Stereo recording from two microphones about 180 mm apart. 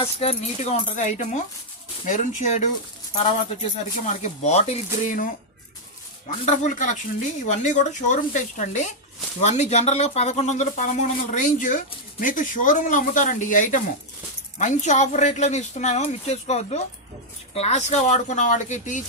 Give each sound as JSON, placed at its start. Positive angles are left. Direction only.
{"t": 0.0, "sound": "speech", "side_deg": 35}
{"t": 4.0, "sound": "speech", "side_deg": 40}
{"t": 6.4, "sound": "speech", "side_deg": 40}